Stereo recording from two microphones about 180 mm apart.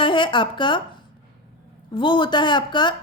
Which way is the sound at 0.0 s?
25° left (ahead or behind).